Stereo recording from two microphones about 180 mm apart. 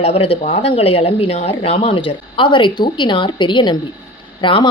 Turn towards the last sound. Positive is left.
turn(degrees=25)  # may be behind; listen again after turning